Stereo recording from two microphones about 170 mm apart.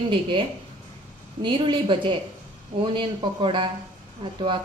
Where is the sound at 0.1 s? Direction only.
30° right (ahead or behind).